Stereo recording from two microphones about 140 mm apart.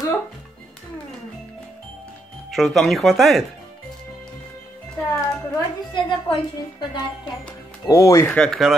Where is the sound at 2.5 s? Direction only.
Centre (ahead or behind).